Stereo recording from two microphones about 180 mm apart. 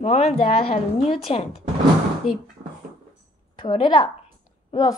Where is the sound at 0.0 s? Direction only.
35° left (ahead or behind).